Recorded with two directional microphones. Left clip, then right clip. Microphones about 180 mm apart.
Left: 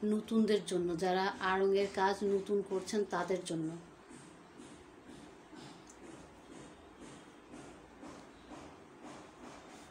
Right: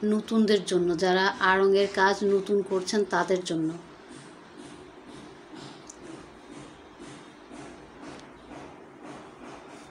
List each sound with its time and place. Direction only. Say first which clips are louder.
0.1 s speech: right 8 dB; centre (ahead or behind)